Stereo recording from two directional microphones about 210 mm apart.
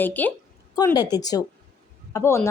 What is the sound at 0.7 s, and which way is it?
A woman's voice, 20° left (ahead or behind).